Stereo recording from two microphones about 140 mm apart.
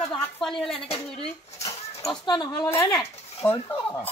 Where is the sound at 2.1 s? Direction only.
30° left (ahead or behind).